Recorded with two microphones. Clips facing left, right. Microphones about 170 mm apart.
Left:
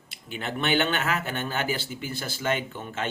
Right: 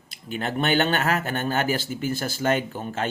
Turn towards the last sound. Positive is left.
turn(degrees=-40)  # may be behind; listen again after turning